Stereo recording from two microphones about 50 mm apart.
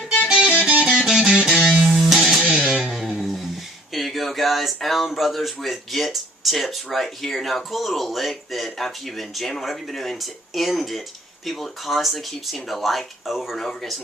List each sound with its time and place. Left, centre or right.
0.2 s music: centre
0.9 s music: centre
2.4 s music: centre
3.2 s a sound: centre
3.9 s speech: centre
13.6 s speech: centre